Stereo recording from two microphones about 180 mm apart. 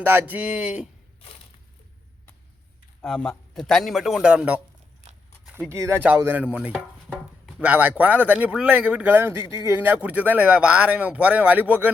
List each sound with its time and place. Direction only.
0.0 s speech: 10° right (ahead or behind)
3.0 s a man's voice: 5° left (ahead or behind)
5.0 s a sound: 40° right (ahead or behind)
5.5 s speech: 15° right (ahead or behind)